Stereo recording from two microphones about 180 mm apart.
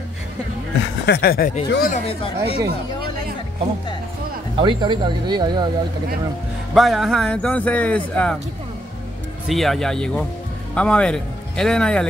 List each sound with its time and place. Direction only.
1.0 s speech: 60° left (ahead or behind)
2.0 s speech: 35° left (ahead or behind)
4.6 s speech: 25° right (ahead or behind)
6.7 s speech: centre (ahead or behind)
9.5 s speech: centre (ahead or behind)